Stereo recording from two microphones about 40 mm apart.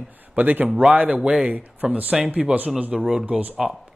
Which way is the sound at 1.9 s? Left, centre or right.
Right.